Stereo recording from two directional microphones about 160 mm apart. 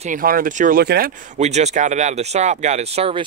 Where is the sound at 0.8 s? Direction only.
80° right.